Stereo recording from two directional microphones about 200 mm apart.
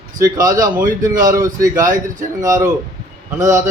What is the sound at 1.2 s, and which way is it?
Speech, 15° right (ahead or behind).